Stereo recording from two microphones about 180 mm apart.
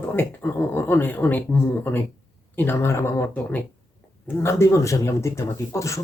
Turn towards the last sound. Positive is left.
turn(degrees=15)  # may be behind; listen again after turning